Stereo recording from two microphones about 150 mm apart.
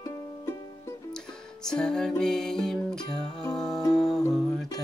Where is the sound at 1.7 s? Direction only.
5° left (ahead or behind).